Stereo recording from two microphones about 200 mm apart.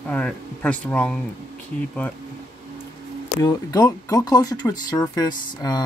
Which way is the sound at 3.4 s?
20° left (ahead or behind).